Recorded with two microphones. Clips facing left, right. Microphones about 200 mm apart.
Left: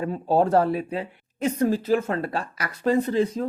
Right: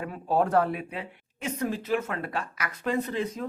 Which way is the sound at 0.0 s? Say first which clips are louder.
Left 5 dB; 30° left (ahead or behind).